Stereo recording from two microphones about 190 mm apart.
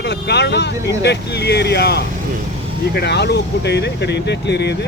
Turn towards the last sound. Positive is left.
turn(degrees=60)  # may be behind; listen again after turning